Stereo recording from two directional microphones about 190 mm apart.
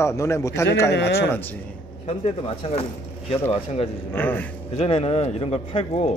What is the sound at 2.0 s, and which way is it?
A man's voice, 35° left (ahead or behind).